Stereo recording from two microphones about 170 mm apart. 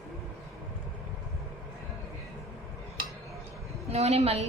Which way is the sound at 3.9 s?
40° right (ahead or behind).